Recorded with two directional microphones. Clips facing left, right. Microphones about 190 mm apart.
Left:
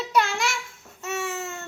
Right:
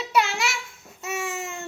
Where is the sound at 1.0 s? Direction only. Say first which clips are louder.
Left 1 dB; 10° right (ahead or behind).